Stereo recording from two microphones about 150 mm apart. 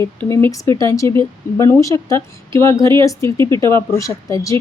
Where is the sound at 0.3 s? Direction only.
20° left (ahead or behind).